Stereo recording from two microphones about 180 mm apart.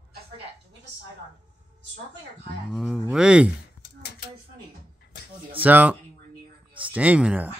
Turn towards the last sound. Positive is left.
turn(degrees=-5)  # may be behind; listen again after turning